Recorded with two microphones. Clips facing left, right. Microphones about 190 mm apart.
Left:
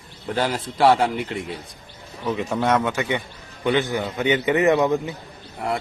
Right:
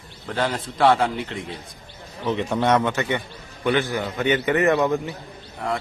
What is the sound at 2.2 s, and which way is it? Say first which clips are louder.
A man's voice: right 1 dB; 5° left (ahead or behind).